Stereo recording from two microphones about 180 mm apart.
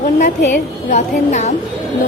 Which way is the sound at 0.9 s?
40° left (ahead or behind).